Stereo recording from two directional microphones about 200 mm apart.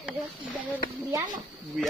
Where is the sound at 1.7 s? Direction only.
Centre (ahead or behind).